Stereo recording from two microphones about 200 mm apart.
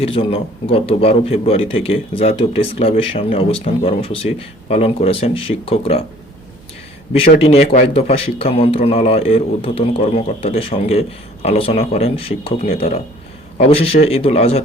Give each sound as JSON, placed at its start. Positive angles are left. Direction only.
{"t": 0.0, "sound": "a man's voice", "side_deg": 25}
{"t": 7.4, "sound": "a man's voice", "side_deg": 30}